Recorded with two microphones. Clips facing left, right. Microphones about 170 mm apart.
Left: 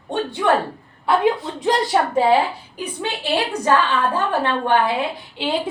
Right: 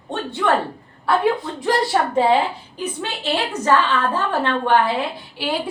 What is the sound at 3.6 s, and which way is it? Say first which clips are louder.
A woman's voice: right 1 dB; 15° left (ahead or behind).